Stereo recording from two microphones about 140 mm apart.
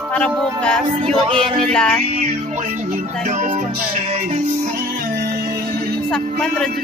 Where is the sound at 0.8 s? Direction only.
40° right (ahead or behind).